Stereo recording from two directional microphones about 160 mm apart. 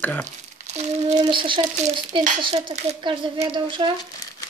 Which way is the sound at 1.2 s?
30° right (ahead or behind).